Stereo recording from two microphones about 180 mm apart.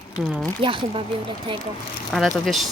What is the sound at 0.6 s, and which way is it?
Speech, 30° right (ahead or behind).